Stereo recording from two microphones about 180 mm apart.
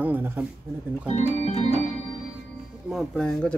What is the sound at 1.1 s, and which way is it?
Speech, 35° left (ahead or behind).